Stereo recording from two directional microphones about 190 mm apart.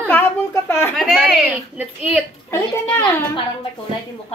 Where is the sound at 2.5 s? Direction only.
10° left (ahead or behind).